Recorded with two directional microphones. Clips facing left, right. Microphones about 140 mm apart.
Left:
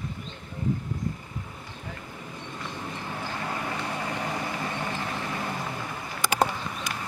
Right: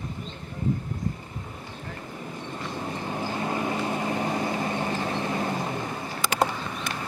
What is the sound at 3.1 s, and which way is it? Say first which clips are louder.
Vehicle: right 5 dB; 25° right (ahead or behind).